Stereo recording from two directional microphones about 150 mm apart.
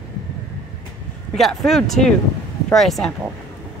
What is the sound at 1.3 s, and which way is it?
Speech, centre (ahead or behind).